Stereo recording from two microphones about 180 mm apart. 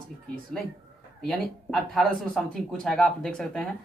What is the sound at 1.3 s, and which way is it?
A man's voice, centre (ahead or behind).